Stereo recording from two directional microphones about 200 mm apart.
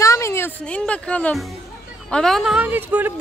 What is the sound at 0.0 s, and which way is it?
Speech, 15° left (ahead or behind).